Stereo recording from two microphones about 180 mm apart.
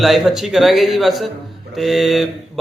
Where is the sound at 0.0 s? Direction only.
Centre (ahead or behind).